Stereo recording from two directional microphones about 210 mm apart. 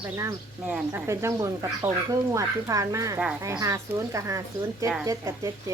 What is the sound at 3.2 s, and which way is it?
Speech, 5° right (ahead or behind).